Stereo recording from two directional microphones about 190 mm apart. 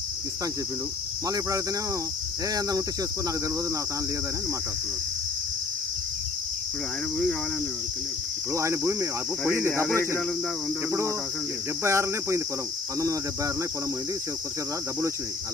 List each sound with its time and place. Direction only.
1.3 s cricket: 15° right (ahead or behind)
8.5 s cricket: 15° right (ahead or behind)
11.8 s cricket: 15° right (ahead or behind)